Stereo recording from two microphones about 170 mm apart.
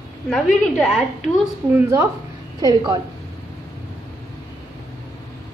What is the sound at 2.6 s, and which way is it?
Speech, 25° right (ahead or behind).